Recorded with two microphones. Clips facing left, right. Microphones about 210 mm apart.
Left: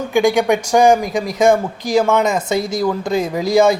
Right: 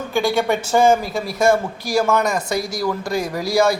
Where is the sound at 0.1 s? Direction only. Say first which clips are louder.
Left 5 dB; 15° left (ahead or behind).